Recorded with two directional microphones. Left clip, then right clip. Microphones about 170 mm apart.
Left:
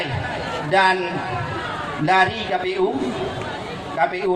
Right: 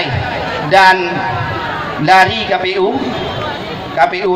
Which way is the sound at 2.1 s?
30° right (ahead or behind).